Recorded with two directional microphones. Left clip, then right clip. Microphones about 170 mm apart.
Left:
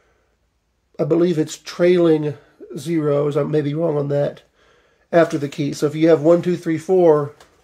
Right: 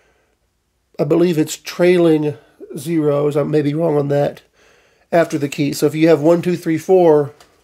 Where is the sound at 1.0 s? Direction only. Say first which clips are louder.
Right 2 dB; 45° right (ahead or behind).